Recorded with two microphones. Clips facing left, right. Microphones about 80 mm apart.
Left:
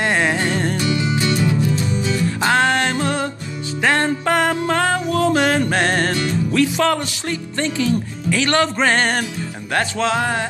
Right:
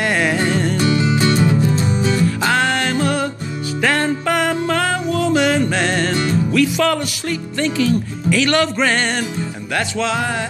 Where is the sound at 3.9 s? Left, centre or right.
Left.